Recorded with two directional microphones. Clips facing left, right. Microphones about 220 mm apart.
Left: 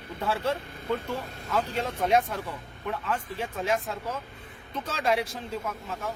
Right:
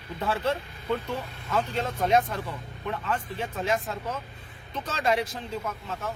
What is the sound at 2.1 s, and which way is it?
Speech, 10° left (ahead or behind).